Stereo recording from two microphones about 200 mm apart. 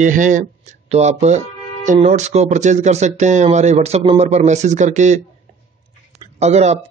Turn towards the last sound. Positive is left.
turn(degrees=-35)  # may be behind; listen again after turning